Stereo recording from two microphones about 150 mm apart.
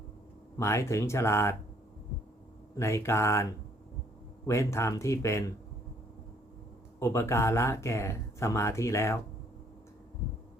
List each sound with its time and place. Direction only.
0.5 s speech: 20° left (ahead or behind)
2.7 s speech: 20° left (ahead or behind)
4.4 s speech: 20° left (ahead or behind)
7.0 s speech: 20° left (ahead or behind)